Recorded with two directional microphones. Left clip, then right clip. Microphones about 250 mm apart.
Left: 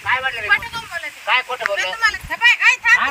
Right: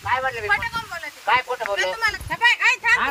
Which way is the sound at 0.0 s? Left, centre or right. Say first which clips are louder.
Left 3 dB; centre.